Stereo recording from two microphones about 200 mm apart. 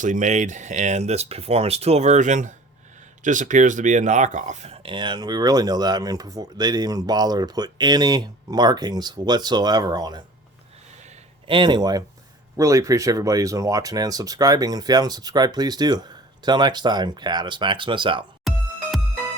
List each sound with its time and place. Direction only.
0.0 s speech: 40° right (ahead or behind); by 10.2 s 20° right (ahead or behind)
11.0 s a sound: 25° right (ahead or behind)
12.5 s speech: 15° right (ahead or behind)